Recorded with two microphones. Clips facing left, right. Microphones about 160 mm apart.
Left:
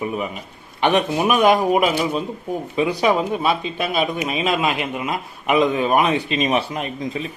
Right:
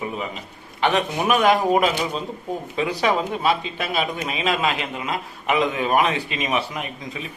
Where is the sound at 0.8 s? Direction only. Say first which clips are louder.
Left 3 dB; 20° left (ahead or behind).